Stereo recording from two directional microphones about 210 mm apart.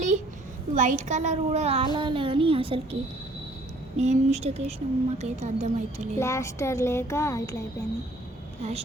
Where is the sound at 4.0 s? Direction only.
30° right (ahead or behind).